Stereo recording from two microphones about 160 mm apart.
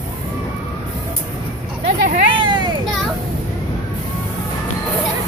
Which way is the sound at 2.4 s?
30° right (ahead or behind).